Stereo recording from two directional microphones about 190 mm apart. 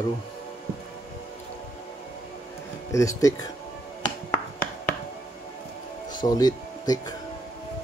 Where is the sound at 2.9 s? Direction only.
15° left (ahead or behind).